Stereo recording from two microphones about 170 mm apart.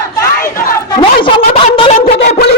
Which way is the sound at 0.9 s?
30° left (ahead or behind).